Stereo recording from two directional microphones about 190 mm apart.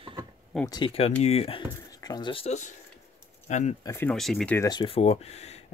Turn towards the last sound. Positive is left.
turn(degrees=35)  # may be behind; listen again after turning